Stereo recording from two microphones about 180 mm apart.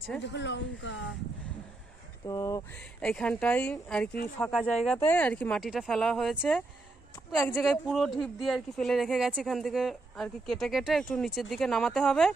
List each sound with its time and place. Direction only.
0.2 s speech: 75° left (ahead or behind); by 1.1 s 90° left
2.2 s speech: 15° left (ahead or behind)
3.0 s speech: 5° left (ahead or behind)